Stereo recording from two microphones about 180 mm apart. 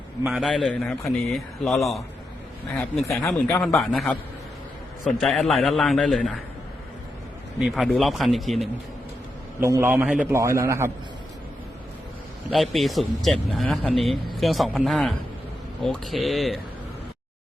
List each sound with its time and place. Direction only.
0.3 s speech: centre (ahead or behind)
7.6 s speech: centre (ahead or behind)
9.6 s a man's voice: 15° right (ahead or behind)
12.5 s speech: centre (ahead or behind)